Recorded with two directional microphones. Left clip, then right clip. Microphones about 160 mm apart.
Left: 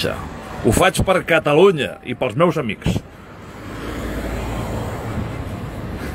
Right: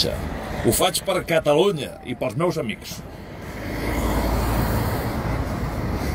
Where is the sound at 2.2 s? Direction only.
50° left (ahead or behind).